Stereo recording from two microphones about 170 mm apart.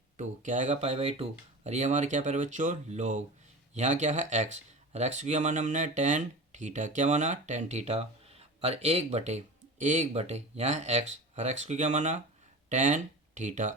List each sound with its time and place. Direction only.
0.2 s speech: 45° right (ahead or behind)